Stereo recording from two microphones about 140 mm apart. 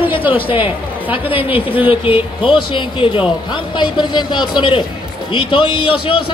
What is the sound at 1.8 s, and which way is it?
A man's voice, 40° left (ahead or behind).